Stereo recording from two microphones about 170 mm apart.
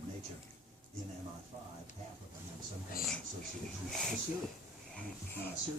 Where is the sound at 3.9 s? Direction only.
Centre (ahead or behind).